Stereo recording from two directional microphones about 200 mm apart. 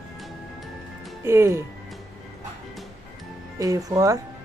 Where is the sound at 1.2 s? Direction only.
15° right (ahead or behind).